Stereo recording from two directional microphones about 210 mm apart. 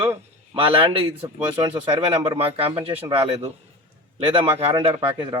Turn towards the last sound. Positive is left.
turn(degrees=-20)  # may be behind; listen again after turning